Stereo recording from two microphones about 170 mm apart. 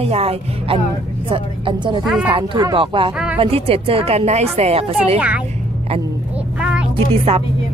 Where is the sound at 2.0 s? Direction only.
5° right (ahead or behind).